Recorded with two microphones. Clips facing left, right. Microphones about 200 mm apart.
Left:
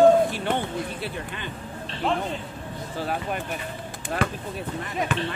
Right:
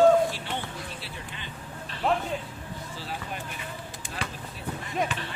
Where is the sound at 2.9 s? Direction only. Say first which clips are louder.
Left 10 dB; 55° left (ahead or behind).